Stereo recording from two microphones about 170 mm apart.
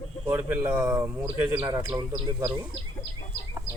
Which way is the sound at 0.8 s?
20° right (ahead or behind).